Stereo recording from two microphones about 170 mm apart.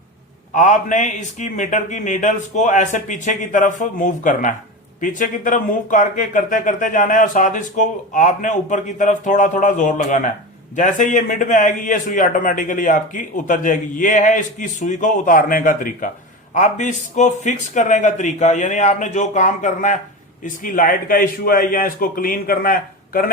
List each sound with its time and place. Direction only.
0.5 s a man's voice: 50° left (ahead or behind)